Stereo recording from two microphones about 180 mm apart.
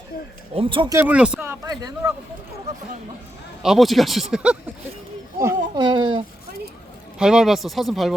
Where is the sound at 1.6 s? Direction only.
20° right (ahead or behind).